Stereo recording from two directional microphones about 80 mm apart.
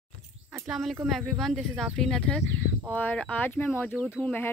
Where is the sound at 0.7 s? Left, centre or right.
Centre.